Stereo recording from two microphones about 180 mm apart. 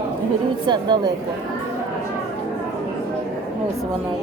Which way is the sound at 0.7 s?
25° right (ahead or behind).